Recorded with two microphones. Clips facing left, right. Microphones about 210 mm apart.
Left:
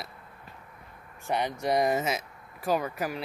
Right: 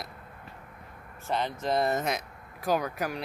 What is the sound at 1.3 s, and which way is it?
Speech, 15° left (ahead or behind).